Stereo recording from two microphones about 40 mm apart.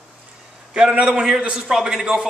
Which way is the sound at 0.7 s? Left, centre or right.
Right.